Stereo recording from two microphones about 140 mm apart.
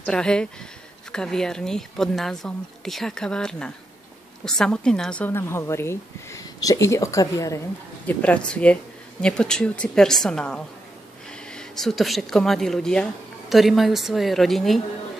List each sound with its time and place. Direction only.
0.0 s a woman's voice: 5° left (ahead or behind); by 7.6 s 25° left (ahead or behind)
8.1 s speech: 10° left (ahead or behind)